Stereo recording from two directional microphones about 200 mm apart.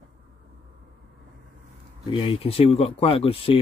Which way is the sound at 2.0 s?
25° left (ahead or behind).